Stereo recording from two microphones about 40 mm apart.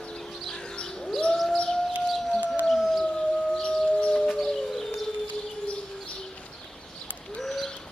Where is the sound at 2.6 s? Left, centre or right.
Centre.